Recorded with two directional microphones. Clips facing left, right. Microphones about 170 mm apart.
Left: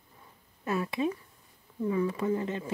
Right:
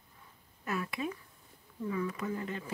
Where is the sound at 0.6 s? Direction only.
25° left (ahead or behind).